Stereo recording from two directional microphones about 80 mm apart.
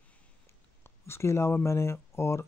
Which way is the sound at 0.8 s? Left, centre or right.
Left.